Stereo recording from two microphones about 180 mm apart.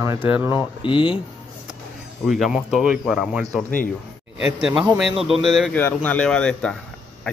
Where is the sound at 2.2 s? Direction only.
Centre (ahead or behind).